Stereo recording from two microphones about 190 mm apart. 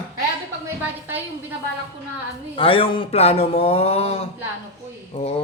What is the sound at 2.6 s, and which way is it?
A man's voice, 25° left (ahead or behind).